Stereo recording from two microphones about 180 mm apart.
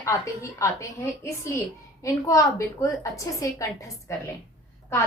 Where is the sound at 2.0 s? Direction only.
15° left (ahead or behind).